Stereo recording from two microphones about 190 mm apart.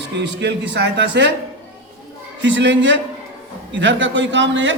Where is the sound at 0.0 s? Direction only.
65° right (ahead or behind).